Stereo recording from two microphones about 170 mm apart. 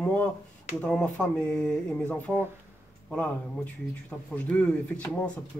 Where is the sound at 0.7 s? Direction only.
5° left (ahead or behind).